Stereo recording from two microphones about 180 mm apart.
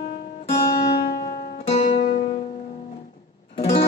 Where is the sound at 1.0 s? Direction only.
60° left (ahead or behind).